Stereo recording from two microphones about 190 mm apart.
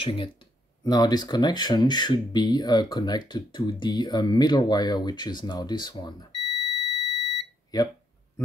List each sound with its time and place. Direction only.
0.0 s speech: 25° left (ahead or behind)